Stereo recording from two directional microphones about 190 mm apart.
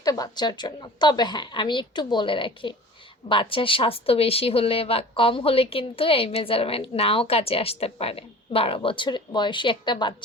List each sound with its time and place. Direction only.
0.0 s speech: 20° left (ahead or behind)